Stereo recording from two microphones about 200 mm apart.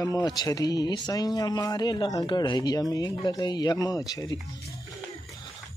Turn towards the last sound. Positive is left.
turn(degrees=15)  # may be behind; listen again after turning